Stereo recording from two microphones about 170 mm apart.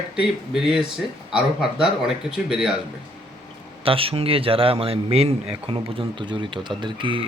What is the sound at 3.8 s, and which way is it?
A man's voice, 35° right (ahead or behind).